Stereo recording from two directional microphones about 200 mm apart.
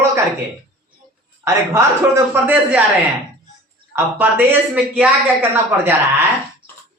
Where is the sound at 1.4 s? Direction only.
15° right (ahead or behind).